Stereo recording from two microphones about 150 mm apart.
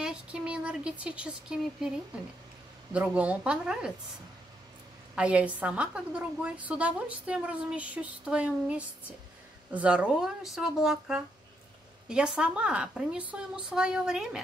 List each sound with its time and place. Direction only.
0.0 s speech: 5° right (ahead or behind)
2.9 s a woman's voice: 10° right (ahead or behind)
5.1 s a woman's voice: 10° right (ahead or behind)